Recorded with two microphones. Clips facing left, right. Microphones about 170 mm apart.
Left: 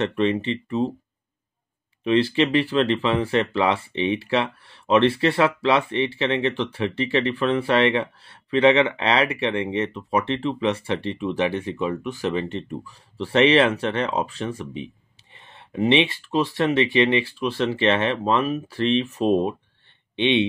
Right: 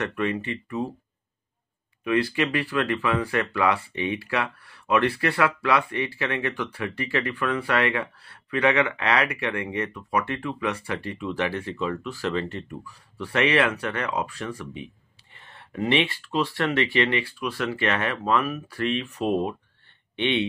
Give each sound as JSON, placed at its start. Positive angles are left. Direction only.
{"t": 0.1, "sound": "speech", "side_deg": 25}
{"t": 2.0, "sound": "speech", "side_deg": 25}